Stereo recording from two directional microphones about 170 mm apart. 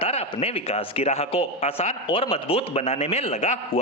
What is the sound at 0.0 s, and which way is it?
A man's voice, 35° left (ahead or behind).